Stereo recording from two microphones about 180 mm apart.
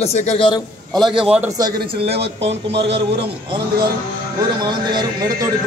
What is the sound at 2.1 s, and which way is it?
Speech, 70° right (ahead or behind).